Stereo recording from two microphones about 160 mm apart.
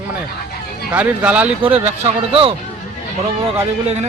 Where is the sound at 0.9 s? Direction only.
10° right (ahead or behind).